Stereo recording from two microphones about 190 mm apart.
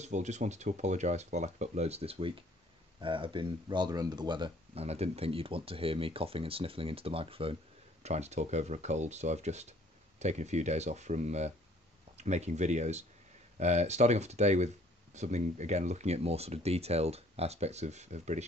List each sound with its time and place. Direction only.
0.0 s speech: 35° right (ahead or behind)